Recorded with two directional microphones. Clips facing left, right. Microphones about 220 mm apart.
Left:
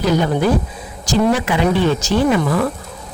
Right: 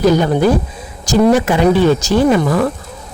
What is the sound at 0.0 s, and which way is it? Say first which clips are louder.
Speech: right 4 dB; 45° right (ahead or behind).